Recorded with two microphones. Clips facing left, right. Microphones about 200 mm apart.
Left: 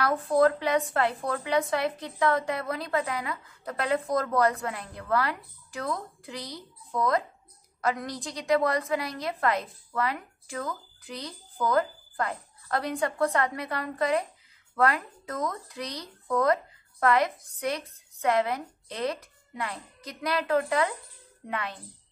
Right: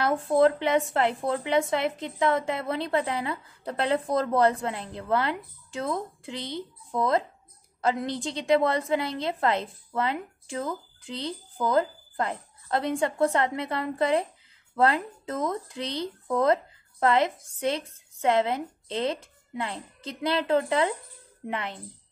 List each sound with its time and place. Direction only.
0.0 s speech: 25° right (ahead or behind)